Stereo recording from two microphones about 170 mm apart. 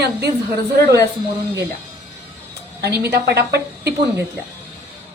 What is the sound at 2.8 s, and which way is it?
A woman's voice, 75° right (ahead or behind).